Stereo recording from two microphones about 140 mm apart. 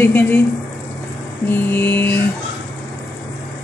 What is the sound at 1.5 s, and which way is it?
Speech, 15° left (ahead or behind).